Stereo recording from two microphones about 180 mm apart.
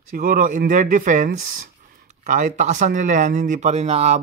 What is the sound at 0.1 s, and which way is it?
Speech, 50° right (ahead or behind).